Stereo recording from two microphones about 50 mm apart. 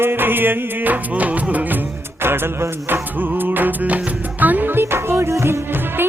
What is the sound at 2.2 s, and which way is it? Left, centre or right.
Music, right.